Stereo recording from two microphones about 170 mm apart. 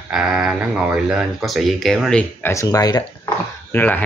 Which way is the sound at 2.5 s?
20° left (ahead or behind).